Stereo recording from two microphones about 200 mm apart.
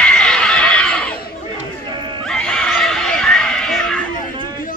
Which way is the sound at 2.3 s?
5° left (ahead or behind).